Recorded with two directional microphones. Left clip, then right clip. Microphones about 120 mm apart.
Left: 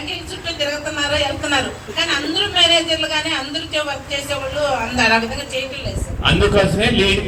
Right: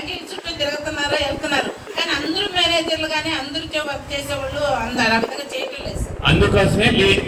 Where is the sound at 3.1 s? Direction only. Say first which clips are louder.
Left 2 dB; 65° left (ahead or behind).